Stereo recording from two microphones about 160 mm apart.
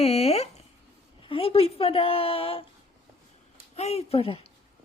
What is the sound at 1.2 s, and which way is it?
A woman's voice, 35° left (ahead or behind).